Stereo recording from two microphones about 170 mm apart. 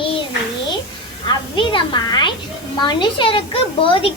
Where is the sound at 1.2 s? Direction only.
30° left (ahead or behind).